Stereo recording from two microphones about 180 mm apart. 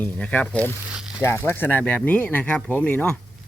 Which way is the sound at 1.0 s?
5° right (ahead or behind).